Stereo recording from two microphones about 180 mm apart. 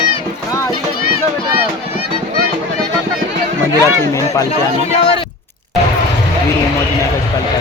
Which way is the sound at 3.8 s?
20° left (ahead or behind).